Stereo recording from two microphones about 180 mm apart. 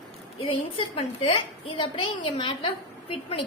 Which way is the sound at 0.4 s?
30° left (ahead or behind).